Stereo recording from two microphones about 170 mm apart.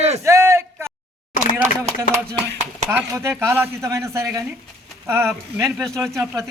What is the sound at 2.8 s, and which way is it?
Speech, 15° right (ahead or behind).